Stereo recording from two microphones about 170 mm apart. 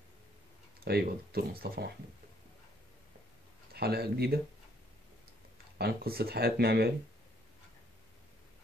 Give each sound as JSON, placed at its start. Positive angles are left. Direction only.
{"t": 0.7, "sound": "speech", "side_deg": -65}
{"t": 3.7, "sound": "speech", "side_deg": -65}
{"t": 5.8, "sound": "speech", "side_deg": -65}